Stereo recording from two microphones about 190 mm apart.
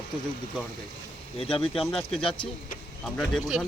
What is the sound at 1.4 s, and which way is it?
Speech, 30° left (ahead or behind).